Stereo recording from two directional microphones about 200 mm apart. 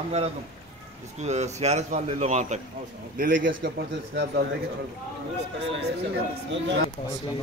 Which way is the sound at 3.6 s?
55° right (ahead or behind).